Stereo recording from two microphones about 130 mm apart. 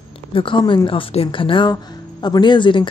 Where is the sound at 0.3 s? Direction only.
40° left (ahead or behind).